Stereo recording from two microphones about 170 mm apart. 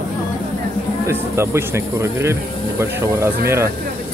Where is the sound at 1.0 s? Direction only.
15° right (ahead or behind).